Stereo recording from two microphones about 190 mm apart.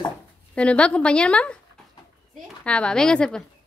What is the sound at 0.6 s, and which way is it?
Speech, 5° left (ahead or behind).